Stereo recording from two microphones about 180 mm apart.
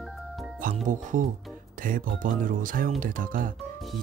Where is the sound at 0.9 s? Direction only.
45° right (ahead or behind).